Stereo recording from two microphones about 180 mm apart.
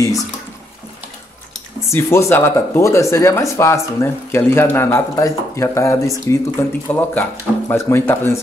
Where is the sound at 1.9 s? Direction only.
15° left (ahead or behind).